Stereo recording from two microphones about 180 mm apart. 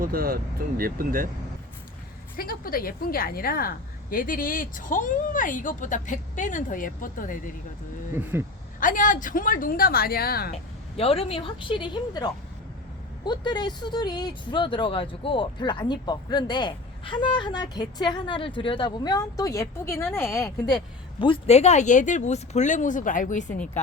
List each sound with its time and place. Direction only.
0.0 s speech: 55° right (ahead or behind)
2.3 s a woman's voice: 55° left (ahead or behind)
8.1 s speech: 15° right (ahead or behind)
8.8 s a woman's voice: 45° left (ahead or behind)
10.9 s speech: 35° left (ahead or behind)